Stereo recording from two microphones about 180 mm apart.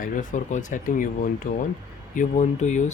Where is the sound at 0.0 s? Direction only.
45° left (ahead or behind).